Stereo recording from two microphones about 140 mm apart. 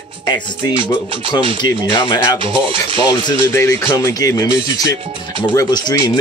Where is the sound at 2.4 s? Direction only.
35° right (ahead or behind).